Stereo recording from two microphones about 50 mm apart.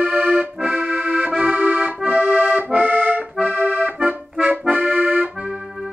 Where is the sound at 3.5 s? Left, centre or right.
Right.